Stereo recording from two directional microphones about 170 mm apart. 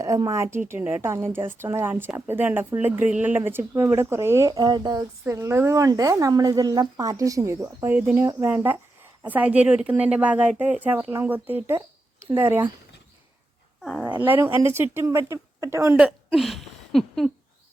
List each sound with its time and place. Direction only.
0.0 s a woman's voice: 20° right (ahead or behind)
14.0 s a woman's voice: 10° right (ahead or behind)